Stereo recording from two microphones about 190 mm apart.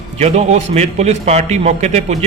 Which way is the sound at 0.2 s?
35° right (ahead or behind).